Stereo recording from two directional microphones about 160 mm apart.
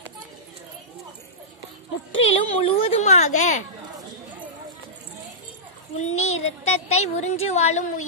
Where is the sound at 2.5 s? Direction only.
35° left (ahead or behind).